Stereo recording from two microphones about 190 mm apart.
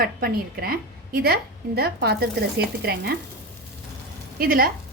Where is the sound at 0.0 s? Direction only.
50° right (ahead or behind).